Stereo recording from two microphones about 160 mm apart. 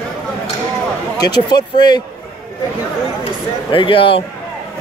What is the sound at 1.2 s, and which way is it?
Speech, 25° left (ahead or behind).